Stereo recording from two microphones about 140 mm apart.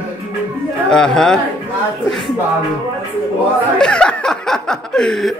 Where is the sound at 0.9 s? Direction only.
5° left (ahead or behind).